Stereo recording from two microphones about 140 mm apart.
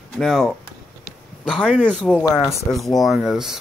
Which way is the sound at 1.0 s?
Centre (ahead or behind).